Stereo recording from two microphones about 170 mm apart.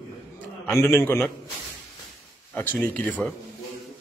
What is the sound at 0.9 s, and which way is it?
Speech, 15° left (ahead or behind).